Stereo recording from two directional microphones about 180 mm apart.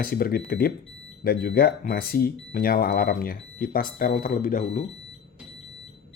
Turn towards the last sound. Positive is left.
turn(degrees=50)  # may be behind; listen again after turning